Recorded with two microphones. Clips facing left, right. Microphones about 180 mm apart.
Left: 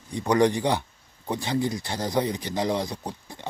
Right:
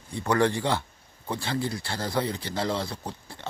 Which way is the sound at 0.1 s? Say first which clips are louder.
Left 3 dB; 15° left (ahead or behind).